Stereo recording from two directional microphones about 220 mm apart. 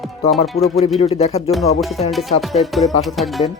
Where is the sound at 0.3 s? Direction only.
Centre (ahead or behind).